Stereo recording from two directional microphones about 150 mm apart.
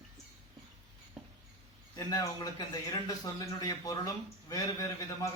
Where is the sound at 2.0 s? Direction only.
25° left (ahead or behind).